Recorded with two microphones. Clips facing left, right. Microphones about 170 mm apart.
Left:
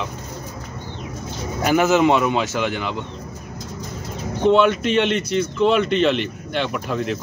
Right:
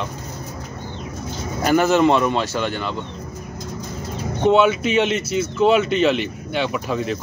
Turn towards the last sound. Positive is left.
turn(degrees=0)  # may be behind; listen again after turning